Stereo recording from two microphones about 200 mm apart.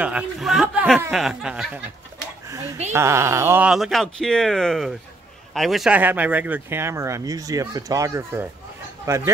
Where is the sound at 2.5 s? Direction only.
15° right (ahead or behind).